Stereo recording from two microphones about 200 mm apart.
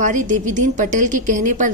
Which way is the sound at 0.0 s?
40° right (ahead or behind).